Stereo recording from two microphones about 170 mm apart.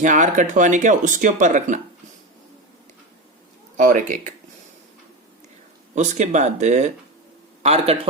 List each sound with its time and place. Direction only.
0.0 s speech: 45° right (ahead or behind)
3.8 s speech: 50° right (ahead or behind)
5.9 s a man's voice: 45° right (ahead or behind)